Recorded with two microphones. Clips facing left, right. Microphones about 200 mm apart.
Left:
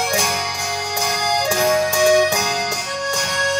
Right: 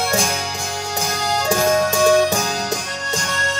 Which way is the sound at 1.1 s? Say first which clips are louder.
Right 1 dB; 15° left (ahead or behind).